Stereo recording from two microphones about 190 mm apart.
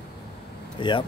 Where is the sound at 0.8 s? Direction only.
25° left (ahead or behind).